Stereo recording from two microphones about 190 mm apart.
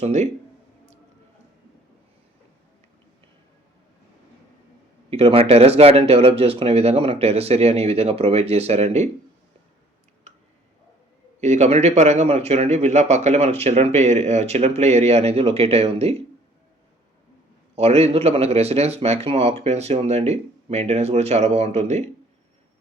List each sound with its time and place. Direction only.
0.0 s speech: 35° right (ahead or behind)
5.1 s speech: 30° right (ahead or behind)
11.3 s speech: 35° right (ahead or behind)
17.7 s speech: 35° right (ahead or behind)